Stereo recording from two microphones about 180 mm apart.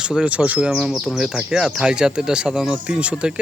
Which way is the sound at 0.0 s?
5° right (ahead or behind).